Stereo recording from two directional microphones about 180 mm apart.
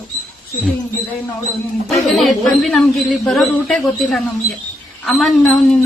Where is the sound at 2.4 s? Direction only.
Centre (ahead or behind).